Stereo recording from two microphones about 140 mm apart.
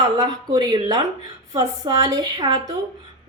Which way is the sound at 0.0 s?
25° right (ahead or behind).